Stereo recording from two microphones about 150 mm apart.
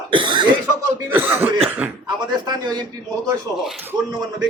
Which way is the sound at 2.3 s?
25° right (ahead or behind).